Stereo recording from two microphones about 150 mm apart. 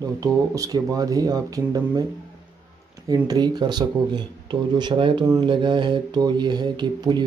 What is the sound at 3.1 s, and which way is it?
Speech, 25° right (ahead or behind).